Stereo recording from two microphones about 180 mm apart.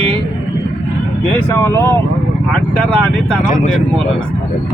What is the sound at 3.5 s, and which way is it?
Speech, 45° left (ahead or behind).